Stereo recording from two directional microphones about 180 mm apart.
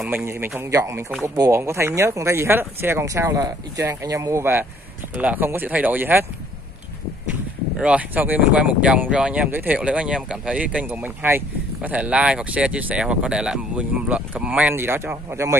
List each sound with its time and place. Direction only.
0.0 s speech: 10° right (ahead or behind)
7.8 s speech: 10° right (ahead or behind)